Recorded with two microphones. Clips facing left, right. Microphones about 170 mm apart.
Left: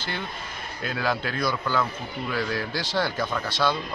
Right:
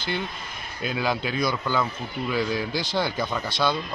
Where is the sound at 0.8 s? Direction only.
15° right (ahead or behind).